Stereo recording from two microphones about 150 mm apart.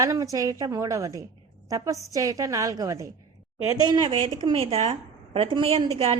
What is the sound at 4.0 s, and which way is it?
A woman's voice, 40° right (ahead or behind).